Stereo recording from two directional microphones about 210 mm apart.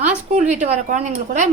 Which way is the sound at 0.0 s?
35° right (ahead or behind).